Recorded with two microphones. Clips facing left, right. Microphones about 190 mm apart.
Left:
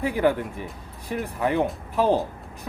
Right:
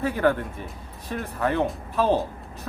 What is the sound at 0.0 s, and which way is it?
Speech, 15° left (ahead or behind).